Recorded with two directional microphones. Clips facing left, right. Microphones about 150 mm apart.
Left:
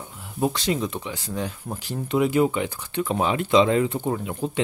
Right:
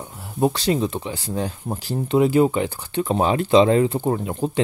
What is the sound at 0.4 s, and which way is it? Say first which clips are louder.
Speech: right 4 dB; 35° right (ahead or behind).